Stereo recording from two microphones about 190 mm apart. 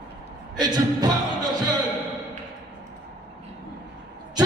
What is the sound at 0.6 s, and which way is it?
Speech, 20° right (ahead or behind).